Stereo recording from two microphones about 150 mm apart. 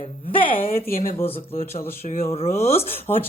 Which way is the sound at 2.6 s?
45° left (ahead or behind).